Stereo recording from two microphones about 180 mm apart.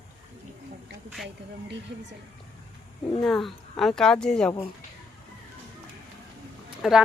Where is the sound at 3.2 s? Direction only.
Centre (ahead or behind).